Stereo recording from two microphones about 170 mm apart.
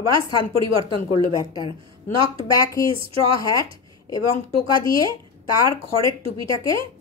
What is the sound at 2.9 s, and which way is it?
Speech, 35° right (ahead or behind).